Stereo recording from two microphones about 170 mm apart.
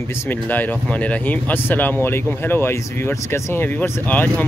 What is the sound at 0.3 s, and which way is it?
Speech, 10° left (ahead or behind).